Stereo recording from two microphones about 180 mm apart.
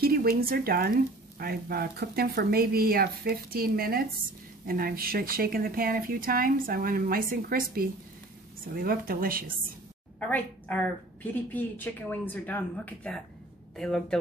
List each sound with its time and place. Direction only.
0.0 s speech: 60° right (ahead or behind)
10.2 s speech: 10° left (ahead or behind)